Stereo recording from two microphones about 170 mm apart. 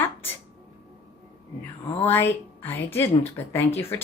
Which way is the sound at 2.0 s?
10° left (ahead or behind).